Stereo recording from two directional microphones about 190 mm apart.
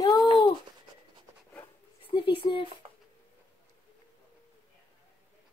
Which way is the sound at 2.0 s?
25° left (ahead or behind).